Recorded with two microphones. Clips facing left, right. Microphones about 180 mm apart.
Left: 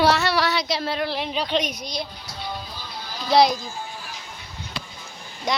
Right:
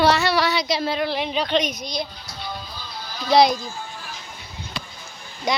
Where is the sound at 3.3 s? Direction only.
Centre (ahead or behind).